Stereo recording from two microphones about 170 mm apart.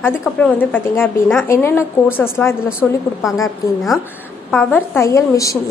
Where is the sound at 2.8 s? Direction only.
Centre (ahead or behind).